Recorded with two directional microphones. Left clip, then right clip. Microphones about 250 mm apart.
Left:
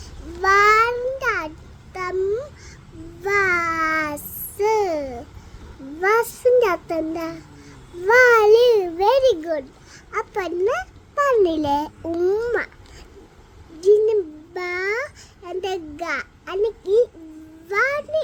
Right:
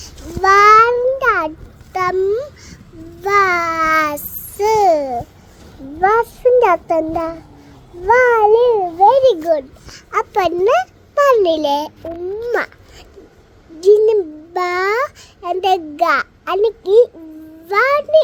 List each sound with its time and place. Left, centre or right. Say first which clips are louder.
0.0 s a sound: right 6 dB; centre
3.2 s babbling: right 6 dB; centre
6.0 s child singing: right 5 dB; centre
8.0 s a child's voice: right 2 dB; left
13.8 s a child's voice: right 5 dB; centre